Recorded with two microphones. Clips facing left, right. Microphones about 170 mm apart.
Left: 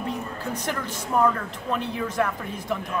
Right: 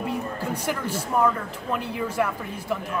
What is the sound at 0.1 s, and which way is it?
Speech, 10° right (ahead or behind).